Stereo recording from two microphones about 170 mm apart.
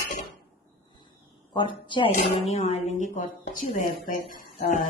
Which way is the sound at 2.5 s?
40° left (ahead or behind).